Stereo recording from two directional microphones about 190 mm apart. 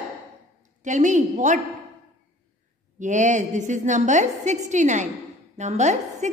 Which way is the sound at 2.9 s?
40° right (ahead or behind).